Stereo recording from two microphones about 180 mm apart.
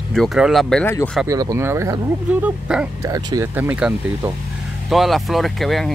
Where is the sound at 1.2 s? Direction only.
20° right (ahead or behind).